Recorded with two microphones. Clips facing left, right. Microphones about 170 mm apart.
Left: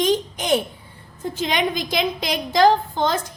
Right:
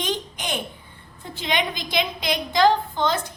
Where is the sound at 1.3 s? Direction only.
45° left (ahead or behind).